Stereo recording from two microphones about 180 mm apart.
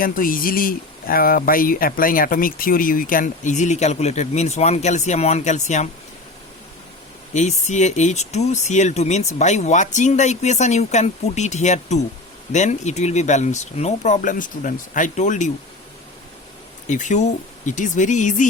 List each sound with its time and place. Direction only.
0.0 s speech: 50° left (ahead or behind)
7.3 s speech: 40° left (ahead or behind)
16.8 s speech: 40° left (ahead or behind)